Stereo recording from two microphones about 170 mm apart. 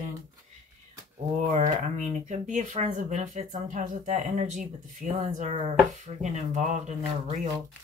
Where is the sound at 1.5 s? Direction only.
50° right (ahead or behind).